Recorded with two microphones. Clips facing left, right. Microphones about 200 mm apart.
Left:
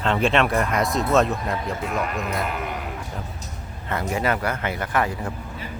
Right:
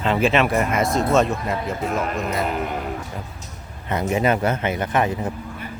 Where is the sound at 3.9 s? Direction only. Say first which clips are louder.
Right 4 dB; 20° right (ahead or behind).